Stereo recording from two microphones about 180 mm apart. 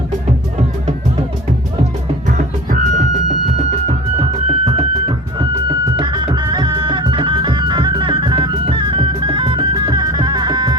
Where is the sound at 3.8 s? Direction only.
35° right (ahead or behind).